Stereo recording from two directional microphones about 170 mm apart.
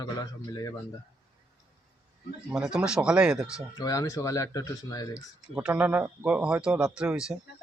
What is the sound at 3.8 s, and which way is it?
Speech, 20° left (ahead or behind).